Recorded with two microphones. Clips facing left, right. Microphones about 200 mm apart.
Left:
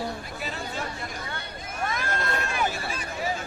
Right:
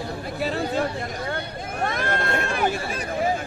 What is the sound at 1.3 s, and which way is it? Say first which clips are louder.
Vehicle: right 7 dB; 50° right (ahead or behind).